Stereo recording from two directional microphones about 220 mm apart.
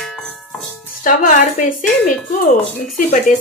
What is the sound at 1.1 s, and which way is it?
Speech, 40° left (ahead or behind).